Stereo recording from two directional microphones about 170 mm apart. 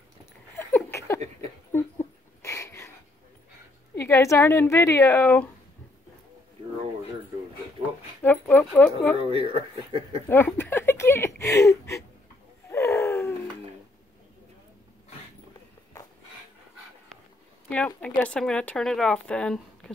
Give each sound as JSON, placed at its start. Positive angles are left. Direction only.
{"t": 0.6, "sound": "a sound", "side_deg": 15}
{"t": 3.9, "sound": "a woman's voice", "side_deg": 15}
{"t": 8.2, "sound": "a woman's voice", "side_deg": 10}
{"t": 9.3, "sound": "speech", "side_deg": -35}
{"t": 10.2, "sound": "a sound", "side_deg": 10}
{"t": 17.6, "sound": "speech", "side_deg": 5}